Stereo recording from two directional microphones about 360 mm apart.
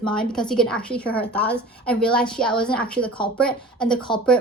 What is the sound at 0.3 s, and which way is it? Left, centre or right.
A woman's voice, centre.